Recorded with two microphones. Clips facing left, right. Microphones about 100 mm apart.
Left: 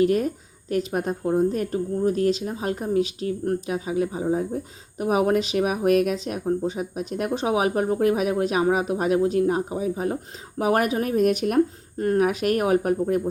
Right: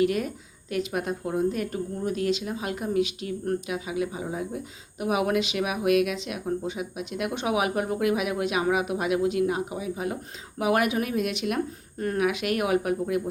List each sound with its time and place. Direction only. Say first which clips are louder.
0.0 s speech: left 4 dB; 35° left (ahead or behind)
11.9 s speech: left 5 dB; 30° left (ahead or behind)